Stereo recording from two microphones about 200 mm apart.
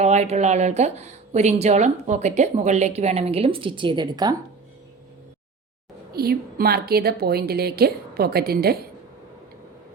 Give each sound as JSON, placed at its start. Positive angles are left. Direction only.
{"t": 0.0, "sound": "speech", "side_deg": -35}
{"t": 6.1, "sound": "a woman's voice", "side_deg": -50}